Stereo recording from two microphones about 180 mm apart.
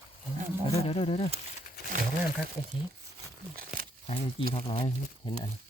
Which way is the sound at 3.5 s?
50° right (ahead or behind).